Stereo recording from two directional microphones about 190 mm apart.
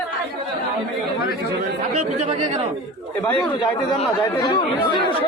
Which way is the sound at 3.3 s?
25° left (ahead or behind).